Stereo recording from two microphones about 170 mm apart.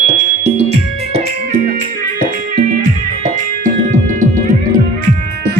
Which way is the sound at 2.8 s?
50° right (ahead or behind).